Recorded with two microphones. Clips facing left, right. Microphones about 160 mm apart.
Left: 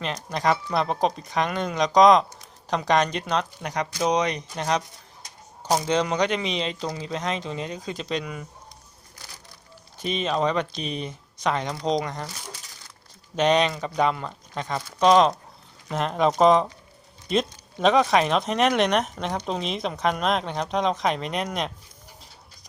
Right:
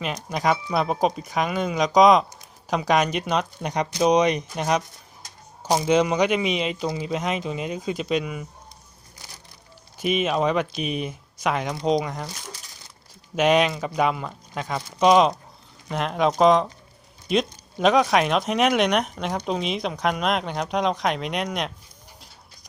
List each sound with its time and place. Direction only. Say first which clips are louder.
0.0 s speech: right 1 dB; 10° right (ahead or behind)
10.0 s speech: right 2 dB; 10° right (ahead or behind)
13.3 s speech: right 1 dB; 5° right (ahead or behind)